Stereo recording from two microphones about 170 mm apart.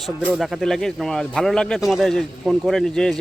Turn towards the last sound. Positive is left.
turn(degrees=5)  # may be behind; listen again after turning